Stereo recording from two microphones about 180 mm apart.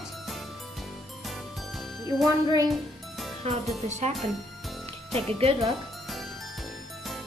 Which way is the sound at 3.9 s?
40° right (ahead or behind).